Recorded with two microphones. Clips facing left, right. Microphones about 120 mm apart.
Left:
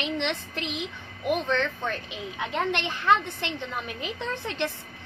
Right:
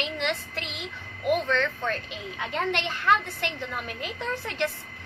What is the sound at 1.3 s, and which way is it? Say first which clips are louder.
Speech: right 1 dB; 20° left (ahead or behind).